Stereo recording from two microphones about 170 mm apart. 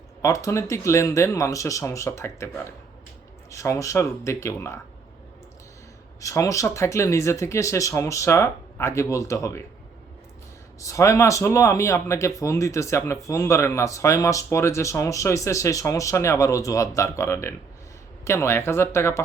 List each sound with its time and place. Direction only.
0.2 s speech: 20° left (ahead or behind)
3.5 s speech: 20° left (ahead or behind)
6.1 s speech: 20° left (ahead or behind)
10.8 s speech: 20° left (ahead or behind)